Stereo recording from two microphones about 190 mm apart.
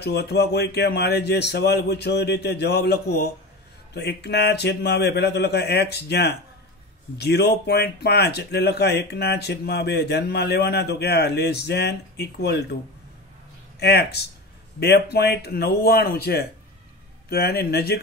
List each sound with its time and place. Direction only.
0.0 s speech: 60° left (ahead or behind)
13.7 s speech: 60° left (ahead or behind)